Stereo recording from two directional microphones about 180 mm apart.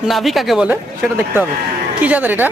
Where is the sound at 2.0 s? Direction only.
10° right (ahead or behind).